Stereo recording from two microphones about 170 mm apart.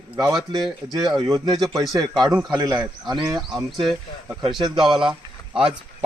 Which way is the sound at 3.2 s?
Centre (ahead or behind).